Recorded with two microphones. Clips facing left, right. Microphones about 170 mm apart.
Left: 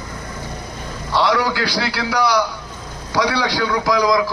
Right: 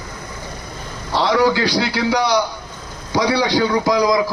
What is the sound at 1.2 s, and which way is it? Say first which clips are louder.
A man's voice: right 3 dB; 25° right (ahead or behind).